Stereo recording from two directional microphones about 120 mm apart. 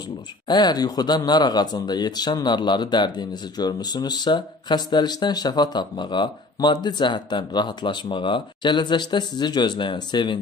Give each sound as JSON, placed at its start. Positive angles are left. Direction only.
{"t": 0.5, "sound": "speech", "side_deg": 35}